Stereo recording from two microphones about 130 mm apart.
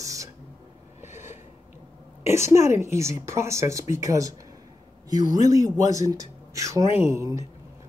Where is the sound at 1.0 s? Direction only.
65° left (ahead or behind).